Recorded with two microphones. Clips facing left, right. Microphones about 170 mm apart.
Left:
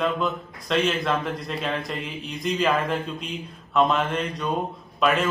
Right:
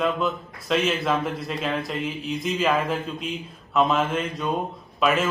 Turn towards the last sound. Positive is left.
turn(degrees=0)  # may be behind; listen again after turning